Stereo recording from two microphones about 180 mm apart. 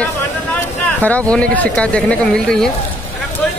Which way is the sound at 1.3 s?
5° left (ahead or behind).